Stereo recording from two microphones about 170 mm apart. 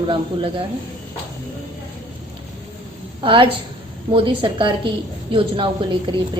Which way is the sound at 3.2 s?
30° right (ahead or behind).